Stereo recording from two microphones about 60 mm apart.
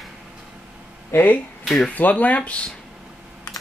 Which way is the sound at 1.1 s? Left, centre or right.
Left.